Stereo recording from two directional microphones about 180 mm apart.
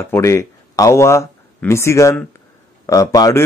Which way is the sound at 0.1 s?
15° left (ahead or behind).